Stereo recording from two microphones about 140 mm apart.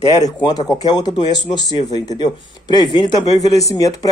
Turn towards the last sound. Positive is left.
turn(degrees=25)  # may be behind; listen again after turning